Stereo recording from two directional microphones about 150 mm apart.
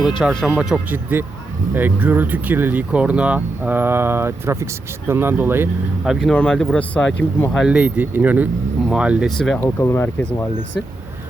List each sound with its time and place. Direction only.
0.2 s speech: centre (ahead or behind); by 5.6 s 15° right (ahead or behind)
6.1 s speech: 5° left (ahead or behind)
9.6 s speech: 15° left (ahead or behind)